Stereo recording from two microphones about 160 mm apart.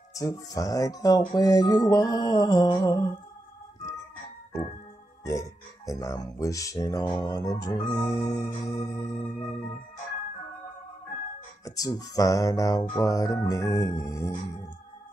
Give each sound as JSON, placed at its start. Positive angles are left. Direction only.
{"t": 0.1, "sound": "organ", "side_deg": 20}
{"t": 5.2, "sound": "speech", "side_deg": 20}
{"t": 7.2, "sound": "organ", "side_deg": 20}
{"t": 11.6, "sound": "organ", "side_deg": 20}